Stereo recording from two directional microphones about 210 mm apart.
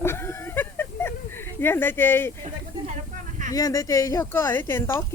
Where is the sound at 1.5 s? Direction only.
10° left (ahead or behind).